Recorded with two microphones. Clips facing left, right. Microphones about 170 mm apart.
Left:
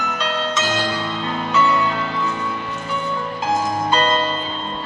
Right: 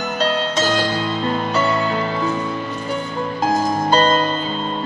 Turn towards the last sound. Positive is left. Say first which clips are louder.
# right 3 dB
turn(degrees=-40)  # may be behind; listen again after turning